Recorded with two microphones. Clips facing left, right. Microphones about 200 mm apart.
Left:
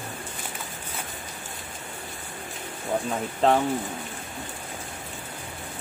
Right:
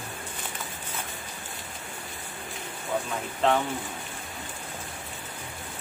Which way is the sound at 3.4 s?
35° left (ahead or behind).